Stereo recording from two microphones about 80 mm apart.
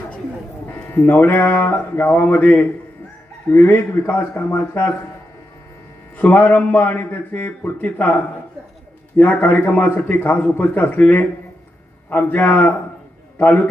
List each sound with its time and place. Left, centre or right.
0.7 s a man's voice: left
6.1 s a man's voice: left
9.1 s a man's voice: left